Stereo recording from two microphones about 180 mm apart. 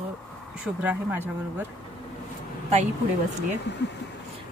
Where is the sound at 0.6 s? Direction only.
10° right (ahead or behind).